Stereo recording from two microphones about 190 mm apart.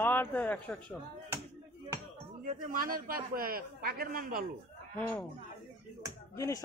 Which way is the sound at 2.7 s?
50° right (ahead or behind).